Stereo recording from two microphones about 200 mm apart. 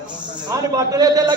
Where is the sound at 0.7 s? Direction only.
20° right (ahead or behind).